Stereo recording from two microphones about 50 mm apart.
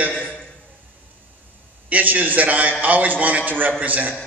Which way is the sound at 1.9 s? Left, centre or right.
Right.